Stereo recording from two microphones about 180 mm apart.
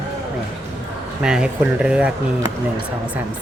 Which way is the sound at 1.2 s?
5° right (ahead or behind).